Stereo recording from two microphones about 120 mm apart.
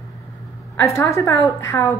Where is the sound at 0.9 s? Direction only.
25° left (ahead or behind).